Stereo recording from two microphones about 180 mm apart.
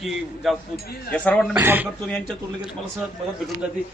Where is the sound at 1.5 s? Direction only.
10° right (ahead or behind).